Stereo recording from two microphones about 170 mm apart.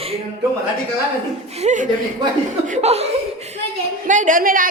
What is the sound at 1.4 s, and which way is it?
Speech, 40° right (ahead or behind).